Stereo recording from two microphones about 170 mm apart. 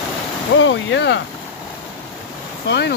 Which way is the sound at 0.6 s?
90° left.